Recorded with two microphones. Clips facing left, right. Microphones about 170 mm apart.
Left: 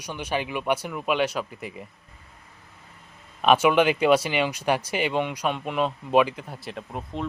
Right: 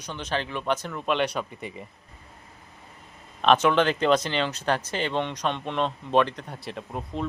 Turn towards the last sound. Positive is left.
turn(degrees=0)  # may be behind; listen again after turning